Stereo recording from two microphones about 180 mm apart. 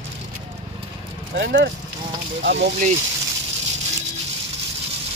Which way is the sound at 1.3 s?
80° right.